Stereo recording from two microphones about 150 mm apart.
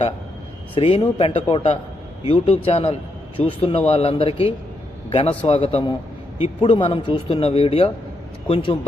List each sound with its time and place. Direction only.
0.8 s a man's voice: 40° left (ahead or behind)